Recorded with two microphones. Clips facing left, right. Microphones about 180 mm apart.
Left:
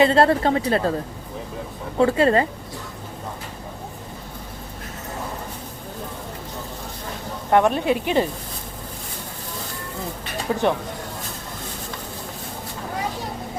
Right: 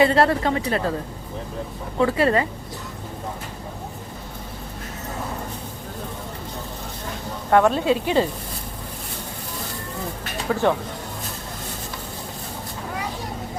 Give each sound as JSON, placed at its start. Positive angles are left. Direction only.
{"t": 0.0, "sound": "a woman's voice", "side_deg": 30}
{"t": 2.0, "sound": "a woman's voice", "side_deg": 30}
{"t": 7.5, "sound": "speech", "side_deg": 15}
{"t": 10.5, "sound": "speech", "side_deg": 20}